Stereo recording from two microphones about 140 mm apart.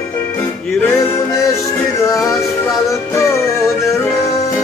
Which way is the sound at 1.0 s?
20° left (ahead or behind).